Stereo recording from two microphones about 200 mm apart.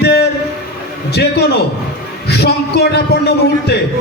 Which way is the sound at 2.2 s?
55° left (ahead or behind).